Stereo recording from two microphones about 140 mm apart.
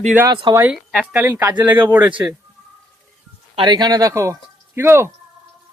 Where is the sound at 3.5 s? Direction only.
30° right (ahead or behind).